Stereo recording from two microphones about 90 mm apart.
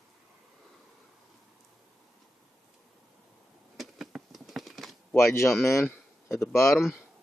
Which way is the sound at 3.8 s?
Centre (ahead or behind).